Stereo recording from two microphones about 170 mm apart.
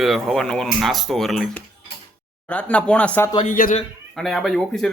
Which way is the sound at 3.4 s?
55° left (ahead or behind).